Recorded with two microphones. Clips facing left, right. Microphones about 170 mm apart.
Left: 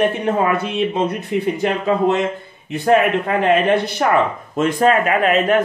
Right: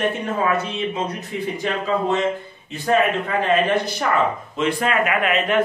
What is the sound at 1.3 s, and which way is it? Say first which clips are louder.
Speech: left 6 dB; 60° left (ahead or behind).